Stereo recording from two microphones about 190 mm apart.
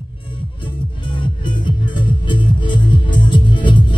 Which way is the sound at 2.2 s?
25° left (ahead or behind).